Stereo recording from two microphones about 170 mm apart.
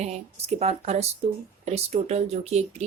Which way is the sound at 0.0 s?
40° right (ahead or behind).